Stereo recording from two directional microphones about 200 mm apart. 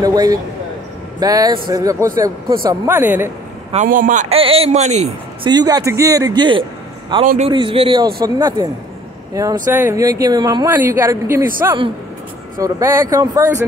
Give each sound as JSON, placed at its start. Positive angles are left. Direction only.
{"t": 0.0, "sound": "speech", "side_deg": -20}
{"t": 3.7, "sound": "a man's voice", "side_deg": -40}
{"t": 5.5, "sound": "speech", "side_deg": -20}
{"t": 12.5, "sound": "speech", "side_deg": -15}